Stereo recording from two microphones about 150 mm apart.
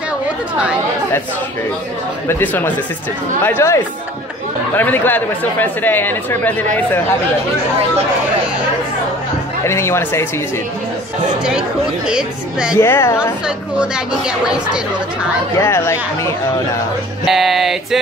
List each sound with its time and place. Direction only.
2.2 s speech: 15° left (ahead or behind)
9.7 s speech: 15° left (ahead or behind)
12.1 s speech: 5° right (ahead or behind)
12.7 s speech: 15° left (ahead or behind)
13.7 s speech: 5° right (ahead or behind)
15.5 s speech: 15° left (ahead or behind)
17.2 s speech: centre (ahead or behind)